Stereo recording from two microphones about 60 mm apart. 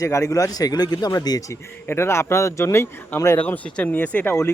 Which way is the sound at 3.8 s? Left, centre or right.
Left.